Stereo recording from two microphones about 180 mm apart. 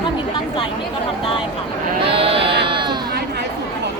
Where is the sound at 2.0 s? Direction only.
30° right (ahead or behind).